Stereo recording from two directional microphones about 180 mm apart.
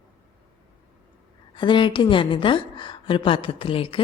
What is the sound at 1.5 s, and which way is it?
A woman's voice, 25° left (ahead or behind).